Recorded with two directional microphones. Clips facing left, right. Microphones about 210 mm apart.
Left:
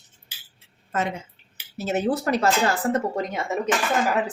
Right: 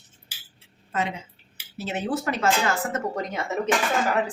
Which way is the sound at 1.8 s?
45° left (ahead or behind).